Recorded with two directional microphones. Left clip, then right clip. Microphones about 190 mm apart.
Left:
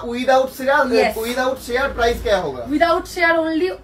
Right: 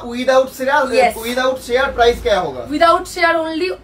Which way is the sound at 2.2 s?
15° right (ahead or behind).